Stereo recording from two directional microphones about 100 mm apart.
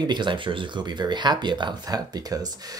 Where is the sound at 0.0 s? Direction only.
50° right (ahead or behind).